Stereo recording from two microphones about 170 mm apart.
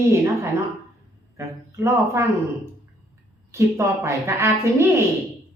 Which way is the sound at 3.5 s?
15° right (ahead or behind).